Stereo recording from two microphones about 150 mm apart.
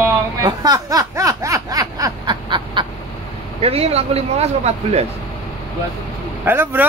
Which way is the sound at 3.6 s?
40° right (ahead or behind).